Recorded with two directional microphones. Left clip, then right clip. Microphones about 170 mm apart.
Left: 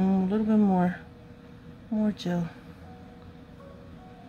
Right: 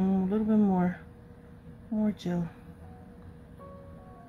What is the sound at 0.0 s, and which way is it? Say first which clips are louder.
Music: left 2 dB; 10° left (ahead or behind).